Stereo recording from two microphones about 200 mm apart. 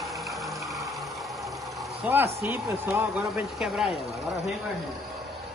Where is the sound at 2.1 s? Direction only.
10° right (ahead or behind).